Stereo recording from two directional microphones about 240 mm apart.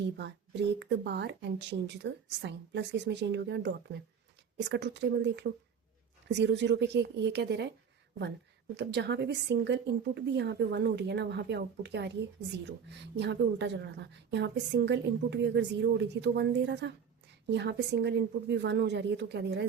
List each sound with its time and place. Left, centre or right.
0.2 s a woman's voice: right
8.7 s a woman's voice: right